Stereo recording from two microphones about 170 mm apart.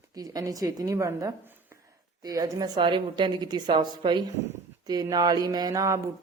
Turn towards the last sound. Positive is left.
turn(degrees=-20)  # may be behind; listen again after turning